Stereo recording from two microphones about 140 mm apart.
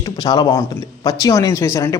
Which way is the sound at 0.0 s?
30° left (ahead or behind).